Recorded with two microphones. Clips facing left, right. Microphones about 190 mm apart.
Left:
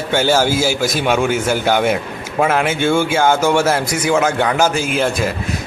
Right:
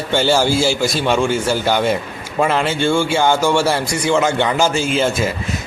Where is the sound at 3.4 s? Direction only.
20° left (ahead or behind).